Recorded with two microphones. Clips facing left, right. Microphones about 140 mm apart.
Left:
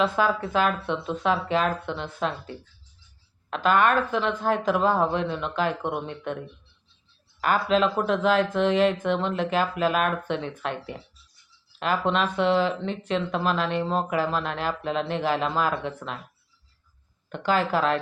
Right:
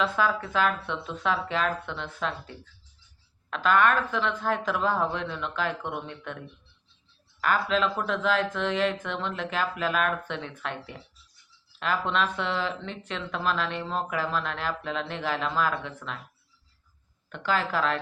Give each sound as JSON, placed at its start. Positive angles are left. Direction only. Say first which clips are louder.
{"t": 0.2, "sound": "speech", "louder": "left 2 dB", "side_deg": 15}
{"t": 3.5, "sound": "speech", "louder": "left 2 dB", "side_deg": 15}
{"t": 7.4, "sound": "speech", "louder": "left 3 dB", "side_deg": 15}
{"t": 17.4, "sound": "speech", "louder": "left 4 dB", "side_deg": 15}